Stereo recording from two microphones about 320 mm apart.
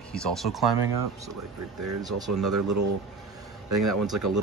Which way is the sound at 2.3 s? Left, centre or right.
Right.